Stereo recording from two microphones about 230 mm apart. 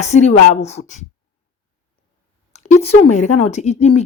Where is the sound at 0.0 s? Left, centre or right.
Left.